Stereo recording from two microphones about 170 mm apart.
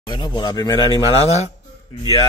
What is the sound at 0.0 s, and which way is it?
Speech, 25° left (ahead or behind).